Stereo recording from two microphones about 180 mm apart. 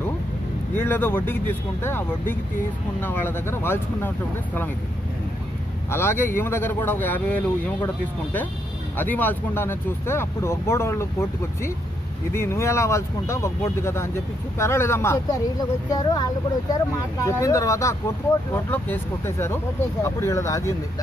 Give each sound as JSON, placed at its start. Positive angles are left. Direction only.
{"t": 0.7, "sound": "speech", "side_deg": 10}
{"t": 5.9, "sound": "speech", "side_deg": 15}